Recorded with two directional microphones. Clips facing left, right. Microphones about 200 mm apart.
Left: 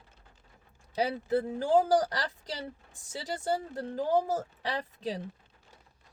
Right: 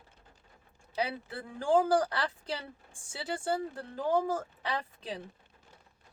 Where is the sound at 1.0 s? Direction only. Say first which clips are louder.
Left 8 dB; 40° left (ahead or behind).